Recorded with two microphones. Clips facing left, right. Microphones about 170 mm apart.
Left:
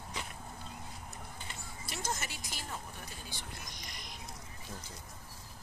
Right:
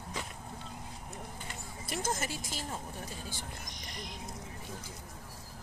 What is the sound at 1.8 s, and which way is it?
Speech, 45° right (ahead or behind).